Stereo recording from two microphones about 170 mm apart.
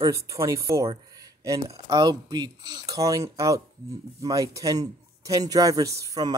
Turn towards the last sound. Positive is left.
turn(degrees=-20)  # may be behind; listen again after turning